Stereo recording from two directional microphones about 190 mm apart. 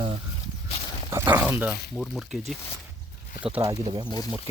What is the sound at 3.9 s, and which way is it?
Speech, 25° right (ahead or behind).